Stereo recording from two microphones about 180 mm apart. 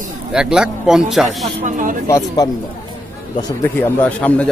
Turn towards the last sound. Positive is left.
turn(degrees=10)  # may be behind; listen again after turning